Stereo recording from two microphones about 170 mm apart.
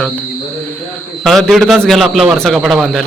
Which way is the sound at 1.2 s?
Centre (ahead or behind).